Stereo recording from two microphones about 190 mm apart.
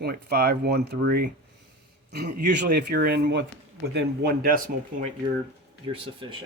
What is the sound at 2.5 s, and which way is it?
Speech, 60° right (ahead or behind).